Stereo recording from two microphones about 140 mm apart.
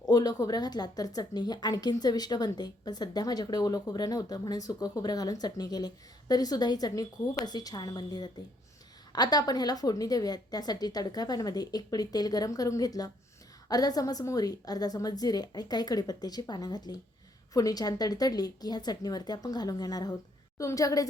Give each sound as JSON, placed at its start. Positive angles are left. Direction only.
{"t": 0.0, "sound": "a woman's voice", "side_deg": 25}